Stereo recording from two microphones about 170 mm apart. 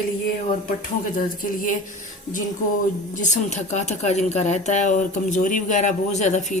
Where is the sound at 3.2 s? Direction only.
45° left (ahead or behind).